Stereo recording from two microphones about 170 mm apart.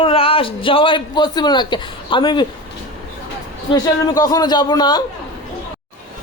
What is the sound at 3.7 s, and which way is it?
A man's voice, 20° left (ahead or behind).